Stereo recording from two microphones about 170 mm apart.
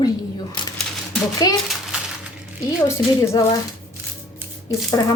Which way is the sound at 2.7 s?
20° left (ahead or behind).